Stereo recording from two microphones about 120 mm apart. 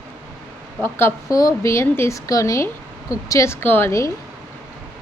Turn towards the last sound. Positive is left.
turn(degrees=20)  # may be behind; listen again after turning